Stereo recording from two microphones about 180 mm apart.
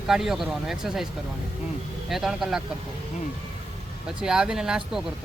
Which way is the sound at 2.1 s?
Centre (ahead or behind).